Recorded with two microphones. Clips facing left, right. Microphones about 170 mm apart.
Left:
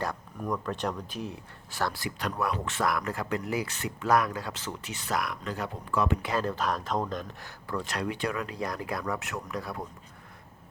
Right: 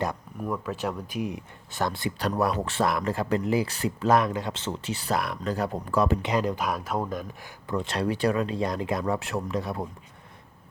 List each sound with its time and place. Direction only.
0.4 s speech: 5° right (ahead or behind); by 6.1 s 40° right (ahead or behind)
6.2 s speech: 15° right (ahead or behind)
7.7 s speech: 25° right (ahead or behind)